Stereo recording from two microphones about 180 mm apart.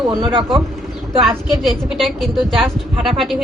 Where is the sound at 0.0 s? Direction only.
20° right (ahead or behind).